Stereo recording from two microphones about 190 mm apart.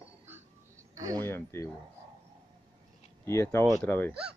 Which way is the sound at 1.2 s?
15° left (ahead or behind).